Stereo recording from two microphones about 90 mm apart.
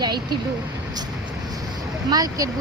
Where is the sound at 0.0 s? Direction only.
55° right (ahead or behind).